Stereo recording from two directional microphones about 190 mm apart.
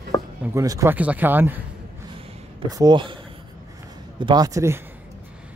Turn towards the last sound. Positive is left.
turn(degrees=-15)  # may be behind; listen again after turning